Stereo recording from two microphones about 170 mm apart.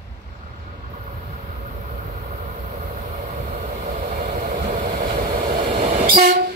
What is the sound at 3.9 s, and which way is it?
Vehicle, 55° right (ahead or behind).